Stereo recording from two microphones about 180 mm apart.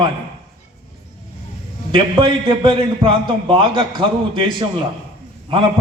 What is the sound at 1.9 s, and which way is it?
A man's voice, 30° right (ahead or behind).